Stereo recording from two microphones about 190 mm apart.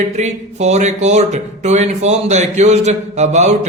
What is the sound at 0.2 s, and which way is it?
Speech, 35° right (ahead or behind).